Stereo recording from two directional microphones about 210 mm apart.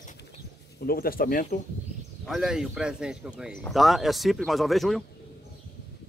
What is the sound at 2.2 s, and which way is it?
Speech, centre (ahead or behind).